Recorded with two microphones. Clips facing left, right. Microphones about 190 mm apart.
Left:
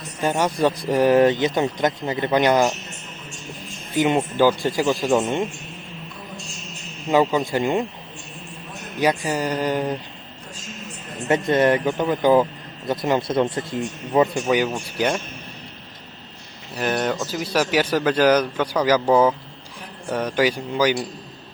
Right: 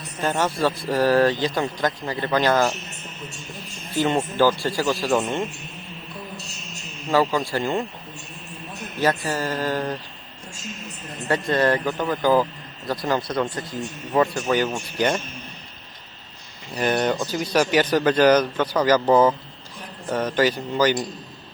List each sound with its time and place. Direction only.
0.2 s speech: 15° left (ahead or behind)
3.9 s speech: 10° left (ahead or behind)
7.1 s speech: 20° left (ahead or behind)
9.0 s speech: 15° left (ahead or behind)
11.3 s speech: 20° left (ahead or behind)
14.4 s speech: 10° left (ahead or behind)
16.7 s speech: 5° left (ahead or behind)